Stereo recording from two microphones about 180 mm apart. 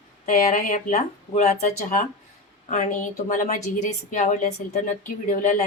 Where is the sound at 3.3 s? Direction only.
45° left (ahead or behind).